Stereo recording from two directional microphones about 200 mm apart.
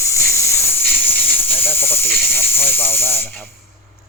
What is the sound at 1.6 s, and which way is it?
Hiss, 10° left (ahead or behind).